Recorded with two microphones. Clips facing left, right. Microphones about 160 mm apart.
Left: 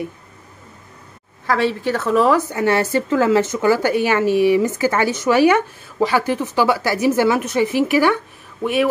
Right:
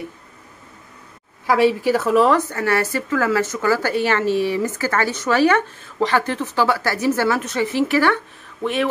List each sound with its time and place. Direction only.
1.5 s a woman's voice: 10° right (ahead or behind)
2.5 s a woman's voice: 20° left (ahead or behind)